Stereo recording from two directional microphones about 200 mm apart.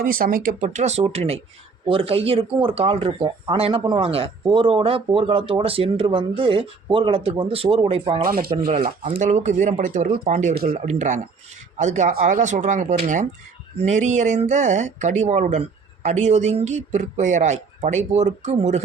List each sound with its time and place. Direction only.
0.0 s speech: 45° right (ahead or behind)
10.8 s speech: 35° right (ahead or behind)